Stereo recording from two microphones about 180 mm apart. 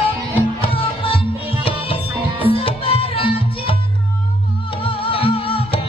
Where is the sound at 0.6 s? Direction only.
30° left (ahead or behind).